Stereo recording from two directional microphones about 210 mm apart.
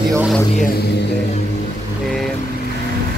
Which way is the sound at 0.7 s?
50° left (ahead or behind).